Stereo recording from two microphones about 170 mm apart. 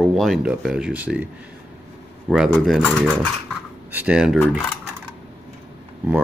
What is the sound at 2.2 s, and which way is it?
Speech, centre (ahead or behind).